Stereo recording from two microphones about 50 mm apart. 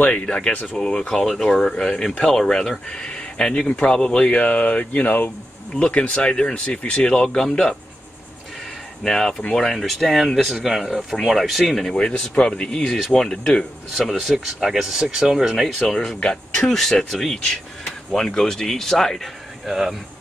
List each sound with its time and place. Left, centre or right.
0.1 s speech: left
5.8 s speech: left
9.0 s speech: centre
9.4 s speech: left
9.7 s speech: centre
11.9 s speech: centre
13.9 s speech: centre
16.2 s speech: centre
16.6 s speech: centre